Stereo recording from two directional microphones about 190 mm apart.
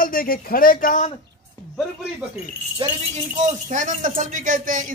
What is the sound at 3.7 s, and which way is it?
Speech, 40° right (ahead or behind).